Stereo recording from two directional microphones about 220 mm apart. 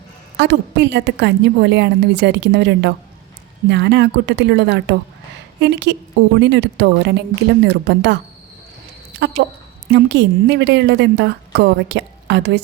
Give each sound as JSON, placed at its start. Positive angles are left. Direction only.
{"t": 0.3, "sound": "a woman's voice", "side_deg": -50}
{"t": 9.2, "sound": "a sound", "side_deg": -50}
{"t": 9.9, "sound": "a woman's voice", "side_deg": -50}